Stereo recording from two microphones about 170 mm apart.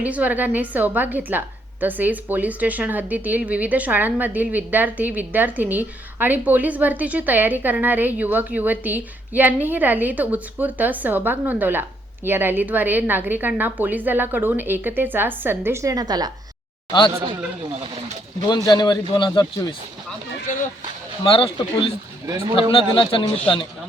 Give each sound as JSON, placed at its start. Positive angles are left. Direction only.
{"t": 0.0, "sound": "a woman's voice", "side_deg": -10}
{"t": 18.4, "sound": "speech", "side_deg": 25}
{"t": 21.2, "sound": "a man's voice", "side_deg": 30}